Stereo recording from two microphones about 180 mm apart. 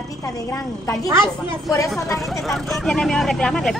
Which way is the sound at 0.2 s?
20° left (ahead or behind).